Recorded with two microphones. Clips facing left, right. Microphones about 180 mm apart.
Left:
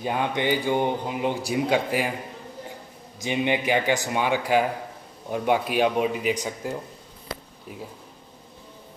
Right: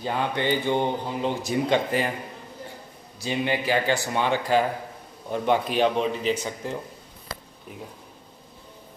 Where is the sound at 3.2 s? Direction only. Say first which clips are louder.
Left 2 dB; 20° left (ahead or behind).